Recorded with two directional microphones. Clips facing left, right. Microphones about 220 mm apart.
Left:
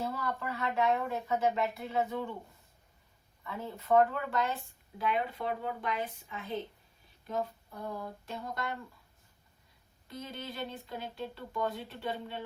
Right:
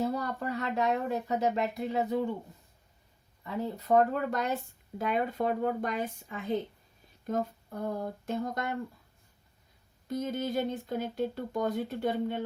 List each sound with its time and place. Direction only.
0.1 s speech: 40° right (ahead or behind)
3.4 s speech: 40° right (ahead or behind)
10.1 s speech: 45° right (ahead or behind)